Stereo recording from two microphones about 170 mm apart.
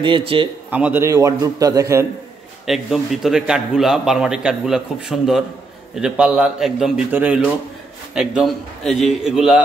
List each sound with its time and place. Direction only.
0.0 s a man's voice: 30° right (ahead or behind)
0.7 s a man's voice: 10° right (ahead or behind)
2.6 s a man's voice: centre (ahead or behind)